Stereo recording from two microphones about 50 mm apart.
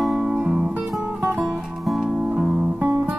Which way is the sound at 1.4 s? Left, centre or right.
Centre.